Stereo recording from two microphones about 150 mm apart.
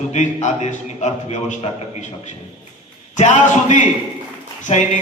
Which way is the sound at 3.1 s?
55° left (ahead or behind).